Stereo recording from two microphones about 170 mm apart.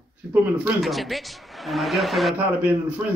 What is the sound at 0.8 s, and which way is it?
A man's voice, centre (ahead or behind).